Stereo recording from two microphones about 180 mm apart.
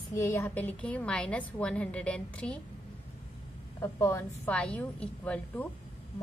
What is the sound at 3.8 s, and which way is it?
A woman's voice, 15° left (ahead or behind).